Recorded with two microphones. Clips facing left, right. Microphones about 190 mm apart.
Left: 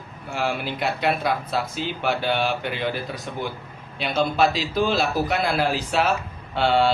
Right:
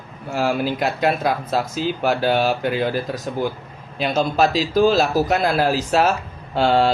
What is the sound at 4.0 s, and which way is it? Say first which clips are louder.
Speech: right 2 dB; 45° right (ahead or behind).